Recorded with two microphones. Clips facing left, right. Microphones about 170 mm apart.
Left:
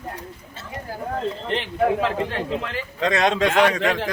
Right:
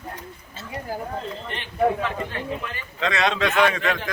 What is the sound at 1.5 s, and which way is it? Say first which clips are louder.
A man's voice: left 1 dB; 90° left.